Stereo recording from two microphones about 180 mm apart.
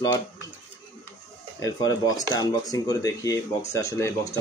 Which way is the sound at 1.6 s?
20° left (ahead or behind).